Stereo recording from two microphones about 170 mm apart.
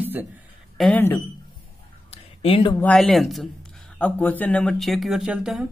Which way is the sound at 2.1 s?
35° left (ahead or behind).